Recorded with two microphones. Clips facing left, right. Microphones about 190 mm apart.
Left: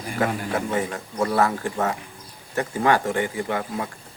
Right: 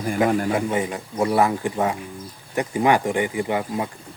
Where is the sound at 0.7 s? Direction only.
15° right (ahead or behind).